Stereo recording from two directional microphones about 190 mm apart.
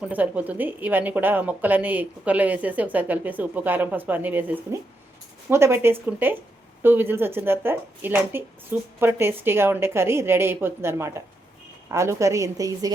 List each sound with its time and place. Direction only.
0.1 s a woman's voice: 10° right (ahead or behind)